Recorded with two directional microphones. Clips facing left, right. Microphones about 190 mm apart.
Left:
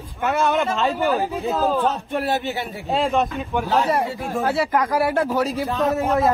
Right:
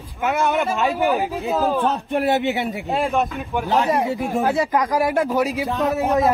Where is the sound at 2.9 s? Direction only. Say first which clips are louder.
Left 2 dB; centre (ahead or behind).